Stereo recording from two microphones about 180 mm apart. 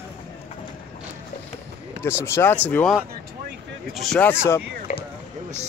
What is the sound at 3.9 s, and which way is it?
Speech, 5° left (ahead or behind).